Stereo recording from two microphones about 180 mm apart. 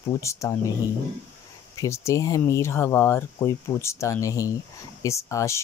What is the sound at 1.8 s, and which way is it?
Speech, 15° left (ahead or behind).